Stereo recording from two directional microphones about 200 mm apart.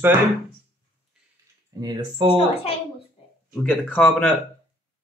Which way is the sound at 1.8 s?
20° right (ahead or behind).